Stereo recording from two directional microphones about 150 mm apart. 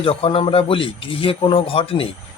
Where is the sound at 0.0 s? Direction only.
40° left (ahead or behind).